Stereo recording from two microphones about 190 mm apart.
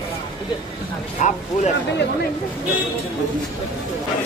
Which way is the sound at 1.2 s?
40° left (ahead or behind).